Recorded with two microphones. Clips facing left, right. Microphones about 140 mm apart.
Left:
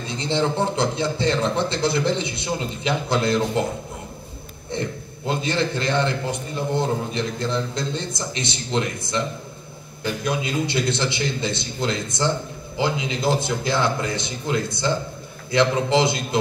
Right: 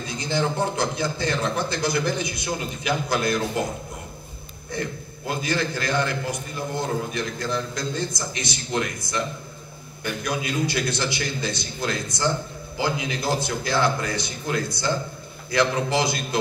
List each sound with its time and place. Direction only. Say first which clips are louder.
0.1 s a man's voice: left 3 dB; 25° left (ahead or behind)
4.6 s a man's voice: left 2 dB; 25° left (ahead or behind)
10.2 s a man's voice: left 1 dB; 25° left (ahead or behind)